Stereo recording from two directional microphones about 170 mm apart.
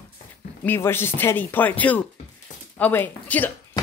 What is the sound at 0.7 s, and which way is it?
Speech, 15° left (ahead or behind).